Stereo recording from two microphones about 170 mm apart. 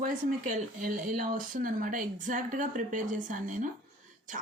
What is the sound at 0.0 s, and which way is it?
Speech, 50° right (ahead or behind).